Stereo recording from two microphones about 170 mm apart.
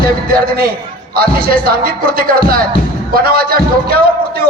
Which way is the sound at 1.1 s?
60° right (ahead or behind).